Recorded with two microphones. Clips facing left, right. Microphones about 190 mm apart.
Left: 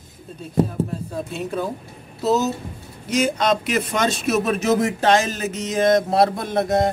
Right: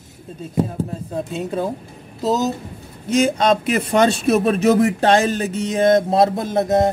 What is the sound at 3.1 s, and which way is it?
A man's voice, 30° right (ahead or behind).